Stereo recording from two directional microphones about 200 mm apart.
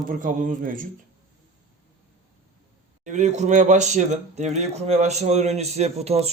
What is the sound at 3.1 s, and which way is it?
Speech, 35° right (ahead or behind).